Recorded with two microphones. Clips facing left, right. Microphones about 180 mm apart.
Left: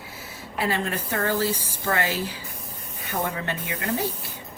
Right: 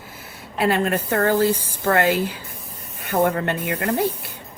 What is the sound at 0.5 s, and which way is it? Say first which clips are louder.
Speech: right 6 dB; 60° right (ahead or behind).